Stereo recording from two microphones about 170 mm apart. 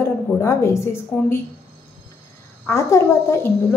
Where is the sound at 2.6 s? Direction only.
15° left (ahead or behind).